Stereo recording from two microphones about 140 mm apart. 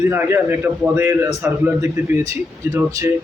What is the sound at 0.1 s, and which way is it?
A man's voice, 15° right (ahead or behind).